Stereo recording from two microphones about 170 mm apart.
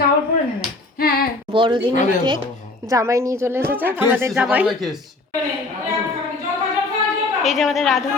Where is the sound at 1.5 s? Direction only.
30° right (ahead or behind).